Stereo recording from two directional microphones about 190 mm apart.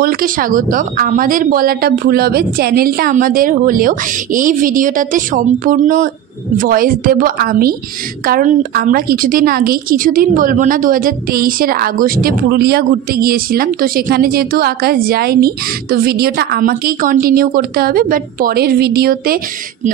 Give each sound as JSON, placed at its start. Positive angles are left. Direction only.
{"t": 0.0, "sound": "a woman's voice", "side_deg": -45}